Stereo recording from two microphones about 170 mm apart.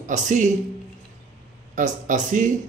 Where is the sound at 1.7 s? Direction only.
50° right (ahead or behind).